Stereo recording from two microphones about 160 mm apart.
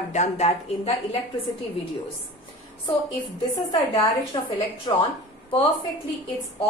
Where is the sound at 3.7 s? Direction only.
35° left (ahead or behind).